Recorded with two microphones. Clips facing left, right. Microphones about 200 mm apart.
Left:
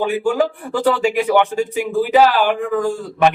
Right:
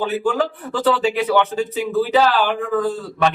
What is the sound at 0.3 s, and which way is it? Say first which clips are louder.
A man's voice: left 3 dB; 10° left (ahead or behind).